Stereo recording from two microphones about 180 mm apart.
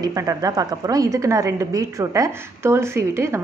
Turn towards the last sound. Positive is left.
turn(degrees=-15)  # may be behind; listen again after turning